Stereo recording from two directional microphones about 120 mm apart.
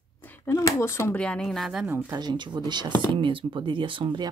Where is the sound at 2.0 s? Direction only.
35° right (ahead or behind).